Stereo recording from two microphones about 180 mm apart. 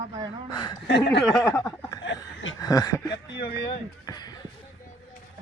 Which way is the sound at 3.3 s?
70° left (ahead or behind).